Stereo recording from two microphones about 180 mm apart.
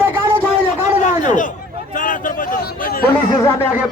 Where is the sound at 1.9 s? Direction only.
45° left (ahead or behind).